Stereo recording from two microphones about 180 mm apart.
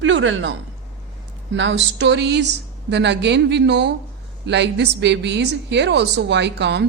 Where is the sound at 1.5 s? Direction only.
85° right.